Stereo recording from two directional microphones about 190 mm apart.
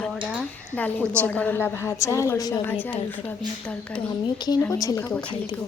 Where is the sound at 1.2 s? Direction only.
10° left (ahead or behind).